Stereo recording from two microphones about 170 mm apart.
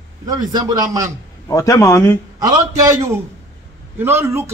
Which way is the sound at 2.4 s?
20° right (ahead or behind).